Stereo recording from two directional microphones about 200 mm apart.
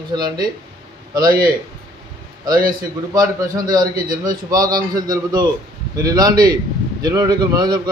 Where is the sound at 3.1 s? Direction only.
20° right (ahead or behind).